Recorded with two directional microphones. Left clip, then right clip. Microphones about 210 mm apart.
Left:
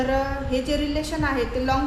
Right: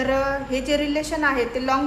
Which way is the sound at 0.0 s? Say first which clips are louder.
Right 2 dB; 30° right (ahead or behind).